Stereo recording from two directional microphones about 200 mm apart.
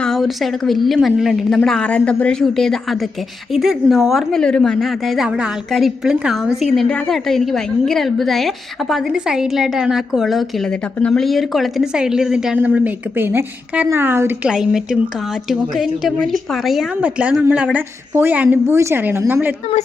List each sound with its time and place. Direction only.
0.0 s a woman's voice: centre (ahead or behind)